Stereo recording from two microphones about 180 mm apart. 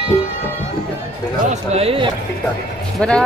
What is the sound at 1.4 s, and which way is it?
Speech, 35° right (ahead or behind).